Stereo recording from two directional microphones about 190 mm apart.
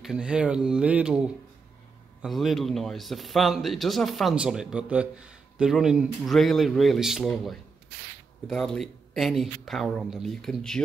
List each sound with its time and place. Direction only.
0.0 s a man's voice: 5° right (ahead or behind)